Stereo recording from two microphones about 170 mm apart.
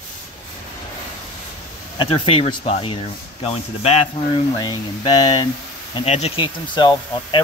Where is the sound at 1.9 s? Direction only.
30° left (ahead or behind).